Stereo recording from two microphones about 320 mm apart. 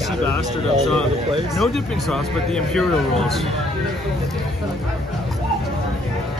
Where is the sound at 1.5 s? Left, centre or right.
Centre.